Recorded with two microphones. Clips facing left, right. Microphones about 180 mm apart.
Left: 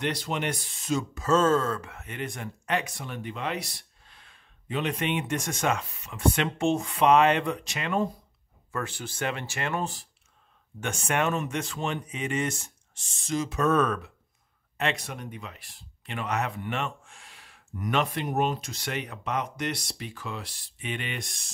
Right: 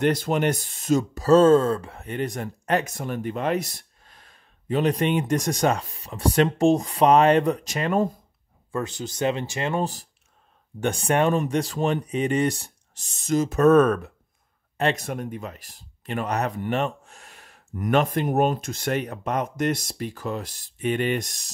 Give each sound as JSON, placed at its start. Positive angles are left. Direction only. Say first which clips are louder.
{"t": 0.0, "sound": "speech", "louder": "right 8 dB", "side_deg": -45}
{"t": 8.7, "sound": "speech", "louder": "right 5 dB", "side_deg": -20}